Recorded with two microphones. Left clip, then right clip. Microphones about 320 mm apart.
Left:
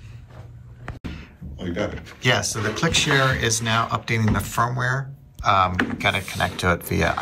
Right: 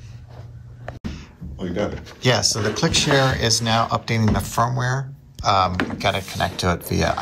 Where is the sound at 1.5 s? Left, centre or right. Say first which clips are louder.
Right 2 dB; centre.